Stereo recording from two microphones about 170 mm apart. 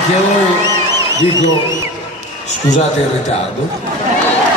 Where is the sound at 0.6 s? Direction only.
20° right (ahead or behind).